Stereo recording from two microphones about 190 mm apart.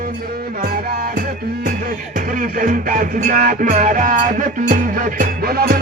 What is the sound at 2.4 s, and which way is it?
Music, 45° right (ahead or behind).